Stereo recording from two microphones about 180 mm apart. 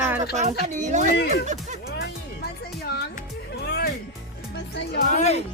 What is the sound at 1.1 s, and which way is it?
Speech, 65° left (ahead or behind).